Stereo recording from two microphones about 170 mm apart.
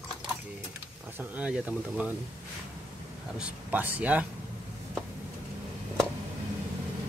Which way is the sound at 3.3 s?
5° right (ahead or behind).